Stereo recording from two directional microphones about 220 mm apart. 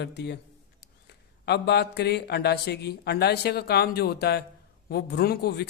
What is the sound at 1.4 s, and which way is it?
Speech, 50° left (ahead or behind).